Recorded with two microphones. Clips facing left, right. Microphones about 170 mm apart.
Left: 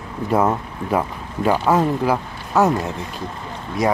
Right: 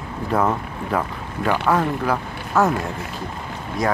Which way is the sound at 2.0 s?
15° left (ahead or behind).